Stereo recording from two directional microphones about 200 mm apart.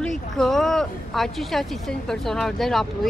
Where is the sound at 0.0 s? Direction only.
Centre (ahead or behind).